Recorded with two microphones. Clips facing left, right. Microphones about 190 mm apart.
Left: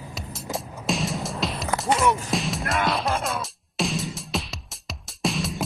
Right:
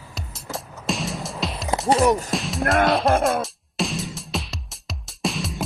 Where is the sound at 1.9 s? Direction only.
40° right (ahead or behind).